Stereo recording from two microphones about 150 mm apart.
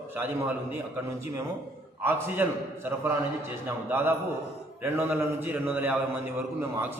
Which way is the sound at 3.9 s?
15° right (ahead or behind).